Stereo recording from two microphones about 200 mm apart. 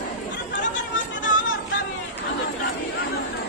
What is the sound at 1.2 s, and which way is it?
Music, 70° left (ahead or behind).